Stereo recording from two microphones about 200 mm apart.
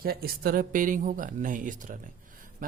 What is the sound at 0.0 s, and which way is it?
Speech, 50° right (ahead or behind).